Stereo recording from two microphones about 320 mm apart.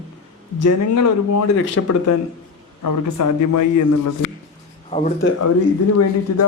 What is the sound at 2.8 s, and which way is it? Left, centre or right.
A man's voice, left.